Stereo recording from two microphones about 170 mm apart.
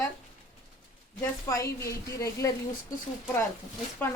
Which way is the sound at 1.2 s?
20° left (ahead or behind).